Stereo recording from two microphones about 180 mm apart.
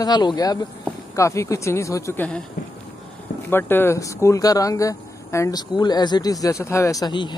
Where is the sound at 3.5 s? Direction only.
10° left (ahead or behind).